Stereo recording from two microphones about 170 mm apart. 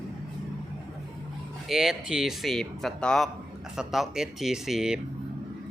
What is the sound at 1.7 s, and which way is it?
A man's voice, 5° right (ahead or behind).